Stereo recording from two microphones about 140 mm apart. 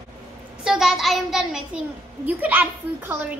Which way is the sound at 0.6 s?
Centre (ahead or behind).